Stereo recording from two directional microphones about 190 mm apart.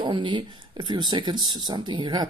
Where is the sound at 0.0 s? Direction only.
25° right (ahead or behind).